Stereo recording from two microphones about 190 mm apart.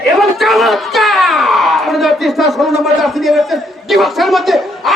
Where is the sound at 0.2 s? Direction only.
Centre (ahead or behind).